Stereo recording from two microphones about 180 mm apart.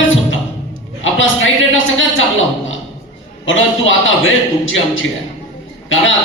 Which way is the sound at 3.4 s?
90° left.